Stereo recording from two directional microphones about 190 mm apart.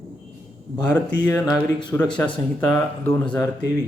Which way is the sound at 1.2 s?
20° left (ahead or behind).